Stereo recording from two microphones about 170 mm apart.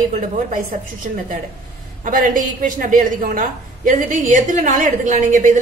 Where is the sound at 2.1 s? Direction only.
50° right (ahead or behind).